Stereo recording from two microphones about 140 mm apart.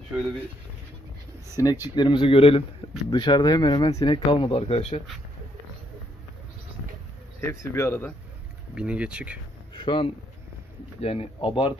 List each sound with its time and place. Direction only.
1.6 s speech: 20° left (ahead or behind)
2.0 s speech: 35° left (ahead or behind); by 5.0 s 50° left (ahead or behind)
7.3 s speech: 20° left (ahead or behind)
8.7 s speech: 10° right (ahead or behind)
9.8 s speech: 35° left (ahead or behind)